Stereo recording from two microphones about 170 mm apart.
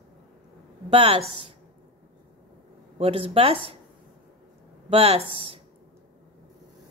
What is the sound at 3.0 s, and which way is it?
Speech, 35° right (ahead or behind).